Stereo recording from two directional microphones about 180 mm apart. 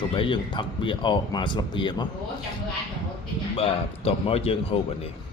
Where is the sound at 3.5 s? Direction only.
35° left (ahead or behind).